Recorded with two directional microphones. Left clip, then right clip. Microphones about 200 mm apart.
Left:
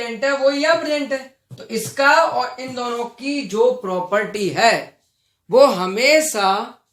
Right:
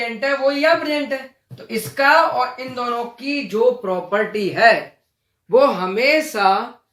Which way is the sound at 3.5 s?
40° left (ahead or behind).